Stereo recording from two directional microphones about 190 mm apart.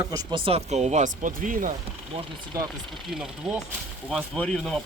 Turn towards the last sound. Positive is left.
turn(degrees=0)  # may be behind; listen again after turning